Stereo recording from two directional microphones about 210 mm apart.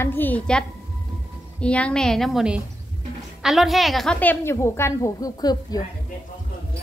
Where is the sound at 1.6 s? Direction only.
5° left (ahead or behind).